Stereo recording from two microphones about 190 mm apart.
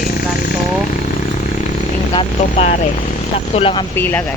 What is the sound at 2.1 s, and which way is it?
Speech, 30° left (ahead or behind).